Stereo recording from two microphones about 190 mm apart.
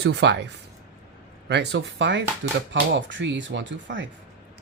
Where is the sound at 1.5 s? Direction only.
65° right (ahead or behind).